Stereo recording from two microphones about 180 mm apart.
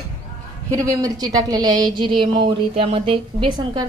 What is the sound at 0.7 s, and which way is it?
A woman's voice, 20° right (ahead or behind).